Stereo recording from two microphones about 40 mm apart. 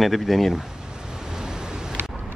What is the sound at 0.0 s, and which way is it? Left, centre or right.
Speech, centre.